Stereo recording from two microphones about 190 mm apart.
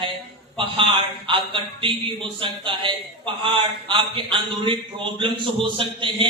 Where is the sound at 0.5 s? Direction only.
25° right (ahead or behind).